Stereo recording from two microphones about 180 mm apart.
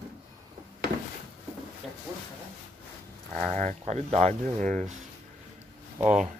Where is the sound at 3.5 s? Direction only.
40° right (ahead or behind).